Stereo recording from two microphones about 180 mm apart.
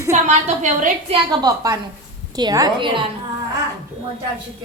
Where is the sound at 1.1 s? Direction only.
25° right (ahead or behind).